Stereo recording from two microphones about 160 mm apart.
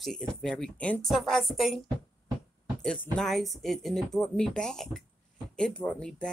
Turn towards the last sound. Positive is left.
turn(degrees=5)  # may be behind; listen again after turning